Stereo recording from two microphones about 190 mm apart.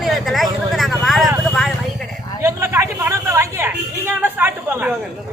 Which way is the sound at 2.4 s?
15° right (ahead or behind).